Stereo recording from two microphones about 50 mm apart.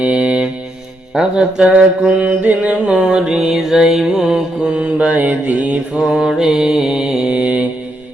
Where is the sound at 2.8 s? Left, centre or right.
Centre.